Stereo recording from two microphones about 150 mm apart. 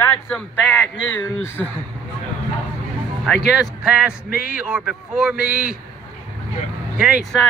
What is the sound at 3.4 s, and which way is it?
Speech, 5° right (ahead or behind).